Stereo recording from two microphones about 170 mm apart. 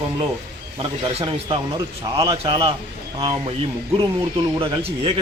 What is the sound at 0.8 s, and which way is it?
A man's voice, 30° right (ahead or behind).